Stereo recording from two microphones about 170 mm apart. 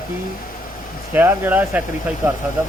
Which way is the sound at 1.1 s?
10° right (ahead or behind).